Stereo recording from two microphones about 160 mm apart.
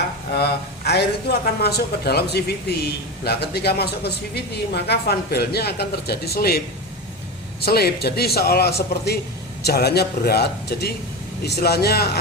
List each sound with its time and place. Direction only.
0.3 s speech: 90° left; by 6.6 s 70° left (ahead or behind)
7.6 s a man's voice: 80° left